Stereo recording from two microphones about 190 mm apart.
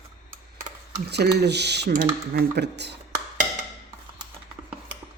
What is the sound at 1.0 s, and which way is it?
Speech, 60° right (ahead or behind).